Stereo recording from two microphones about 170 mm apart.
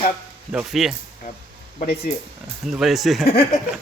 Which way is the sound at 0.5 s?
5° right (ahead or behind).